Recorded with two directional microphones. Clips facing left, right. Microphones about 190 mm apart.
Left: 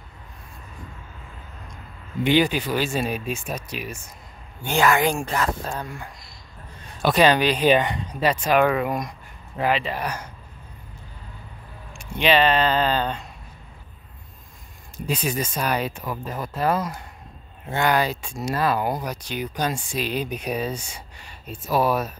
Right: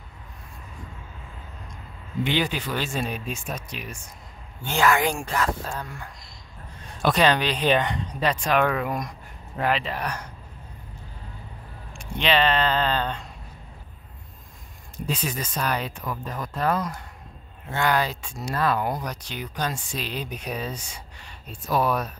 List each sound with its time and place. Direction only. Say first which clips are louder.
2.2 s speech: left 7 dB; 10° left (ahead or behind)
4.6 s speech: left 2 dB; 15° left (ahead or behind)
11.9 s speech: left 3 dB; 10° left (ahead or behind)
15.3 s speech: left 3 dB; 10° left (ahead or behind)